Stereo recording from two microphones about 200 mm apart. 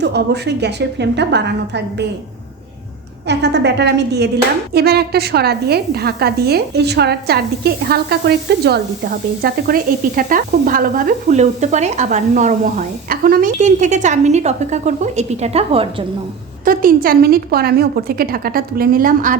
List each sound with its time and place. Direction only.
0.0 s a woman's voice: 55° right (ahead or behind)
3.2 s a woman's voice: 60° right (ahead or behind); by 16.0 s 30° right (ahead or behind)
16.6 s a woman's voice: 45° right (ahead or behind)